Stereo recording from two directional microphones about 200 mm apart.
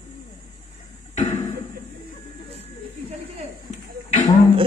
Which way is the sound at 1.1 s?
35° left (ahead or behind).